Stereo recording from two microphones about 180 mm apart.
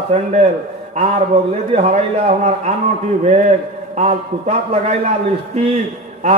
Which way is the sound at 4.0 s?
40° right (ahead or behind).